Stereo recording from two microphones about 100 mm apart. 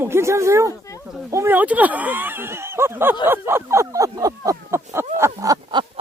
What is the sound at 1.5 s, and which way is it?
Speech, 15° right (ahead or behind).